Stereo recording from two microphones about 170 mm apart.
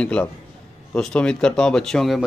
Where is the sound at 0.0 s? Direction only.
5° left (ahead or behind).